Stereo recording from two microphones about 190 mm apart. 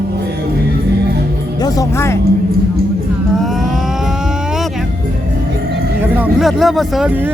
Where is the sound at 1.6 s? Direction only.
20° left (ahead or behind).